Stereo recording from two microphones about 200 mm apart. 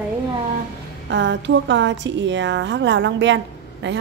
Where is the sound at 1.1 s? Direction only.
65° right (ahead or behind).